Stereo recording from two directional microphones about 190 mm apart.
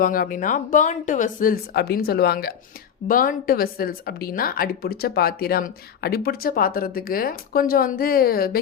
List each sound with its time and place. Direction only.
0.0 s speech: 50° left (ahead or behind)